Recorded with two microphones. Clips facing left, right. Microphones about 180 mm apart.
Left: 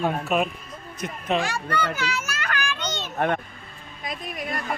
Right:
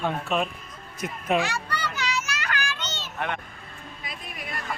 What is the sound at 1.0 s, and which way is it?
Speech, 5° right (ahead or behind).